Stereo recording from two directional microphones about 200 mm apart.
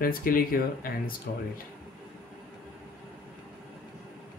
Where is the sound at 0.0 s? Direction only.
45° left (ahead or behind).